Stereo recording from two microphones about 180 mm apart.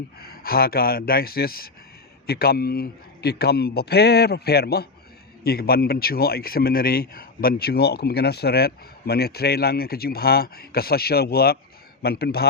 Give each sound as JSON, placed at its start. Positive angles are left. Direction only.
{"t": 0.2, "sound": "speech", "side_deg": 60}